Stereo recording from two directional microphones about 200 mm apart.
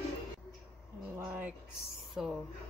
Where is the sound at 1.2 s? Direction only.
10° right (ahead or behind).